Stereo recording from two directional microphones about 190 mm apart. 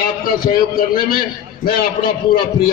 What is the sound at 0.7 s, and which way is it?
Speech, 50° left (ahead or behind).